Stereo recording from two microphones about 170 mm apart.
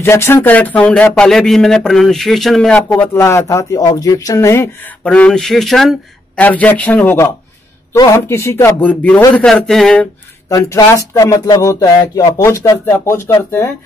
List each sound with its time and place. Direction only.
0.0 s a man's voice: 15° left (ahead or behind)
10.5 s speech: 20° left (ahead or behind)